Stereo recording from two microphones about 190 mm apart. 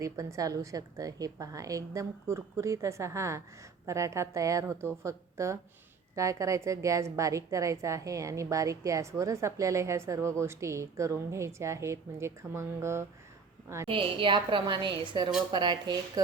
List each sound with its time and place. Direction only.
0.0 s a woman's voice: 15° right (ahead or behind)
13.8 s a woman's voice: 25° right (ahead or behind)